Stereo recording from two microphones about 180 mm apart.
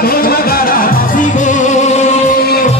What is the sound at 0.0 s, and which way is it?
Music, 55° left (ahead or behind).